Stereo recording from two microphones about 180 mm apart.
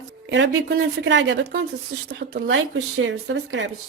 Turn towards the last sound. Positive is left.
turn(degrees=-90)